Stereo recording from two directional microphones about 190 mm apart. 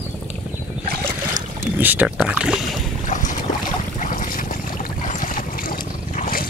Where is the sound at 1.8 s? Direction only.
10° right (ahead or behind).